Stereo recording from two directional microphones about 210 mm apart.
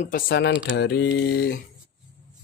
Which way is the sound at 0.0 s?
45° left (ahead or behind).